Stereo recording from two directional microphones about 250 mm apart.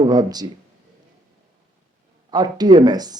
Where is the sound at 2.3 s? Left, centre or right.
Centre.